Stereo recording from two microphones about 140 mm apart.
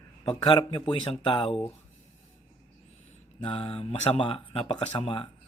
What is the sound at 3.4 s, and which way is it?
Speech, 40° left (ahead or behind).